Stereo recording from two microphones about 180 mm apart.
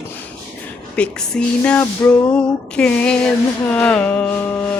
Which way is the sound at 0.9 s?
5° left (ahead or behind).